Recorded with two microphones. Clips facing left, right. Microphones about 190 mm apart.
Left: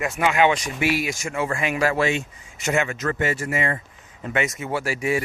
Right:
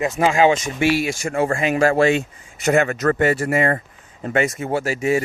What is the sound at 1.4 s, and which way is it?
Speech, 45° right (ahead or behind).